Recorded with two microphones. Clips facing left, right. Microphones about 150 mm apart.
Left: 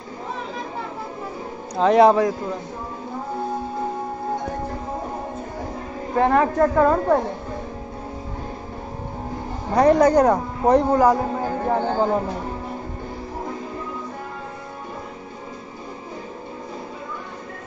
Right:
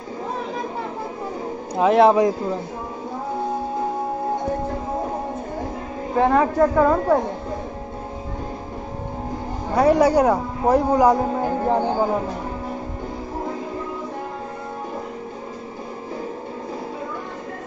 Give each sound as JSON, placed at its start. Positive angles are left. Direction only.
{"t": 1.8, "sound": "speech", "side_deg": -5}
{"t": 6.1, "sound": "speech", "side_deg": -10}
{"t": 9.8, "sound": "speech", "side_deg": -10}